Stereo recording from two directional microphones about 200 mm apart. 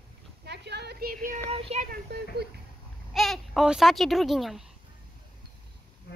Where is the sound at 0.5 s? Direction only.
55° right (ahead or behind).